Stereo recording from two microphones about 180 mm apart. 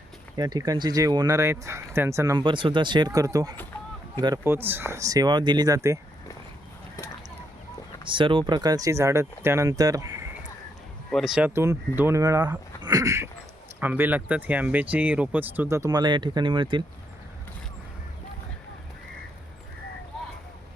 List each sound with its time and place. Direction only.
0.3 s speech: 20° right (ahead or behind)
8.0 s speech: 25° right (ahead or behind)
11.1 s speech: centre (ahead or behind); by 16.8 s 25° right (ahead or behind)